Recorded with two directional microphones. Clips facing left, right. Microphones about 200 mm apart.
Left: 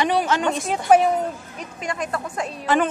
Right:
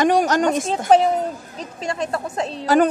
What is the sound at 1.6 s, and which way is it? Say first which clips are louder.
Speech: right 3 dB; 25° right (ahead or behind).